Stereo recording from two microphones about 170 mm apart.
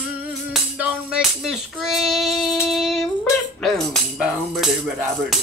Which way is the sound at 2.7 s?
Centre (ahead or behind).